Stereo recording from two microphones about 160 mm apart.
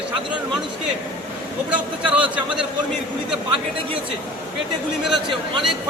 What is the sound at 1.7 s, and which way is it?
Speech, 10° right (ahead or behind).